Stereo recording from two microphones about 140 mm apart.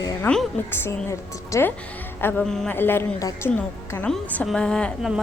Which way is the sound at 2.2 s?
5° left (ahead or behind).